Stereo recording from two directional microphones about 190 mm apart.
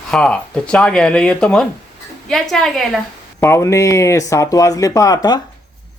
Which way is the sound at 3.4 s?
15° left (ahead or behind).